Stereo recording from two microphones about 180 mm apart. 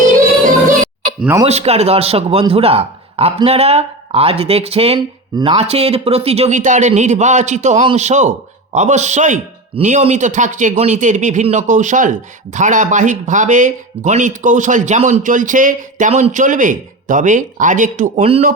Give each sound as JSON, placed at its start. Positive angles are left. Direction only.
{"t": 1.2, "sound": "a man's voice", "side_deg": -15}
{"t": 1.5, "sound": "a man's voice", "side_deg": -35}